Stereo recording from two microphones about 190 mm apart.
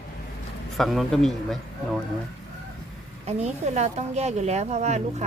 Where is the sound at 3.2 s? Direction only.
35° right (ahead or behind).